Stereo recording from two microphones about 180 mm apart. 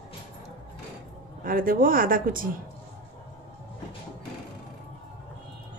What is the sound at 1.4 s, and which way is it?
Speech, 50° right (ahead or behind).